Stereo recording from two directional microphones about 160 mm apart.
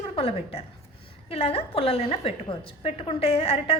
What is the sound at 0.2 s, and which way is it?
A woman's voice, 35° left (ahead or behind).